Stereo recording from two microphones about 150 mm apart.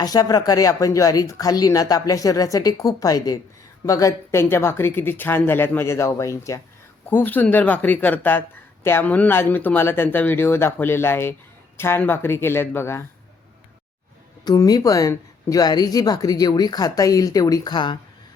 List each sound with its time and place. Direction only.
0.0 s speech: 25° left (ahead or behind)
14.4 s speech: 25° left (ahead or behind)